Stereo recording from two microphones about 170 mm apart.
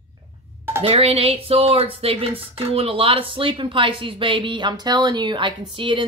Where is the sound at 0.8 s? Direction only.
35° right (ahead or behind).